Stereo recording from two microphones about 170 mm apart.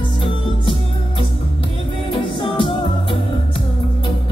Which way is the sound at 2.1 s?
30° left (ahead or behind).